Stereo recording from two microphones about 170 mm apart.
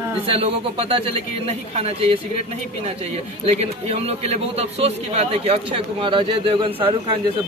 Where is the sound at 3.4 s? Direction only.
40° right (ahead or behind).